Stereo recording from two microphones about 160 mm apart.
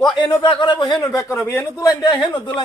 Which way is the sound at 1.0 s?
20° left (ahead or behind).